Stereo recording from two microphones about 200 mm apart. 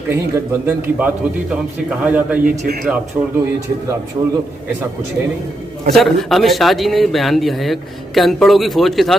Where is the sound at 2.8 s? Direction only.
5° right (ahead or behind).